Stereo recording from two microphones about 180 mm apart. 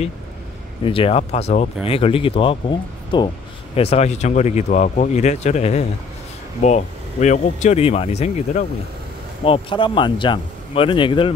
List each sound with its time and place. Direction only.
0.8 s speech: 30° left (ahead or behind)